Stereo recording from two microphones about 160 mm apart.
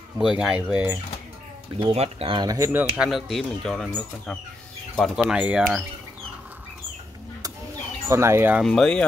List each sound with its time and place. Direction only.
0.2 s speech: 5° right (ahead or behind)
1.8 s speech: 35° right (ahead or behind); by 2.9 s 15° right (ahead or behind)
3.0 s speech: centre (ahead or behind)
8.1 s speech: 15° right (ahead or behind)
8.6 s speech: 5° left (ahead or behind)